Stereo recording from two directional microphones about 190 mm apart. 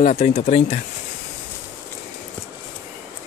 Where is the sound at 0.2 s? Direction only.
35° left (ahead or behind).